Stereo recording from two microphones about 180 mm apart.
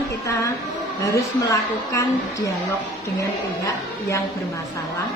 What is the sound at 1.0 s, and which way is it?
Speech, 15° left (ahead or behind).